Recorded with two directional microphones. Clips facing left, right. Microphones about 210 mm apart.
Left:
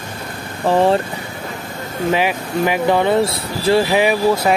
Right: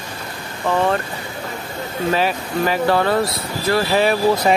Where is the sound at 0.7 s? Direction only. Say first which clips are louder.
Left 4 dB; 35° left (ahead or behind).